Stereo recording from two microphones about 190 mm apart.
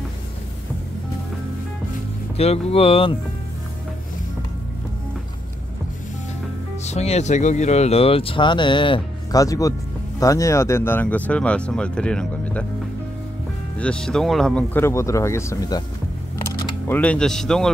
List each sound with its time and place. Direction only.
2.3 s speech: 30° left (ahead or behind)
6.8 s speech: 35° left (ahead or behind); by 12.6 s 5° left (ahead or behind)
13.7 s speech: 5° left (ahead or behind)